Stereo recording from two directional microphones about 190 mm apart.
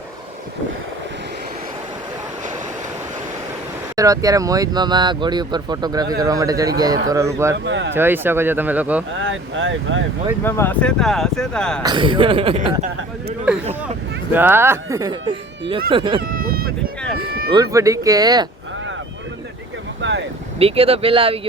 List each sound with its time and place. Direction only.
3.9 s speech: 20° right (ahead or behind)
7.5 s speech: 70° right (ahead or behind)
7.9 s speech: 10° right (ahead or behind)
9.1 s speech: 85° right
10.4 s speech: 10° left (ahead or behind)
11.8 s speech: 25° right (ahead or behind)
14.3 s speech: 10° right (ahead or behind); by 16.2 s 25° right (ahead or behind)
16.3 s a sound: 50° right (ahead or behind)
17.5 s speech: 20° right (ahead or behind)
20.0 s vehicle: 70° right (ahead or behind)
20.6 s speech: 30° right (ahead or behind)